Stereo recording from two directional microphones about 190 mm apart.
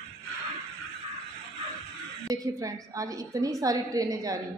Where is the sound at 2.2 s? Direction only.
20° right (ahead or behind).